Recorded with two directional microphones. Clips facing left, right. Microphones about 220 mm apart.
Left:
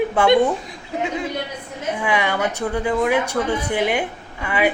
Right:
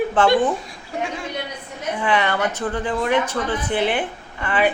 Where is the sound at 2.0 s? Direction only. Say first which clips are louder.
Right 1 dB; 10° left (ahead or behind).